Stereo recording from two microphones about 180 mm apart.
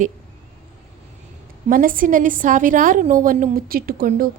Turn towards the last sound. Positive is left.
turn(degrees=-50)  # may be behind; listen again after turning